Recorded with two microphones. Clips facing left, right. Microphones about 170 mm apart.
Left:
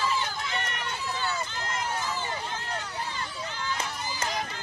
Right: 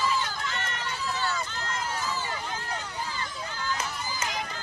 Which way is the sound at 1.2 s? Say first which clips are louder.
Even; 20° left (ahead or behind).